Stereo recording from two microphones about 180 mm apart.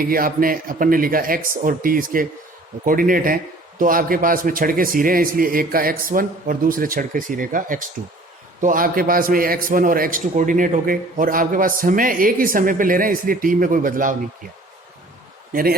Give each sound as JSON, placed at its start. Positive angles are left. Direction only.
{"t": 0.0, "sound": "a man's voice", "side_deg": -50}